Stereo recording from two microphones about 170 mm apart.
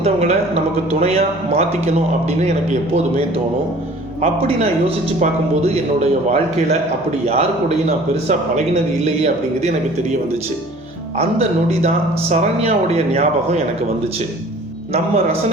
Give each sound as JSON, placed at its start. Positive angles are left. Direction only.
{"t": 0.0, "sound": "a man's voice", "side_deg": -40}
{"t": 7.9, "sound": "a man's voice", "side_deg": -40}
{"t": 11.2, "sound": "a man's voice", "side_deg": -35}
{"t": 14.9, "sound": "a man's voice", "side_deg": -40}